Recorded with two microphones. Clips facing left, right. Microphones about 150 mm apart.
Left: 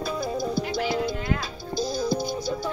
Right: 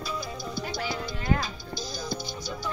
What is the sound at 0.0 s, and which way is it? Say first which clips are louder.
Music: left 7 dB; 50° left (ahead or behind).